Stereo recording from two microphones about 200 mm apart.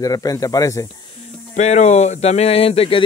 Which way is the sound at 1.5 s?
35° left (ahead or behind).